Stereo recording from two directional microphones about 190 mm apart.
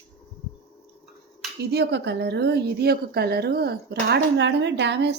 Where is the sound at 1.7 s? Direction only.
60° right (ahead or behind).